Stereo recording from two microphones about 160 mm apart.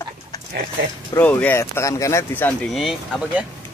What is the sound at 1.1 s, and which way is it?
Speech, 10° left (ahead or behind).